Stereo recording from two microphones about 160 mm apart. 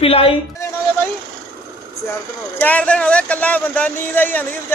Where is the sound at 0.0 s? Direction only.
35° left (ahead or behind).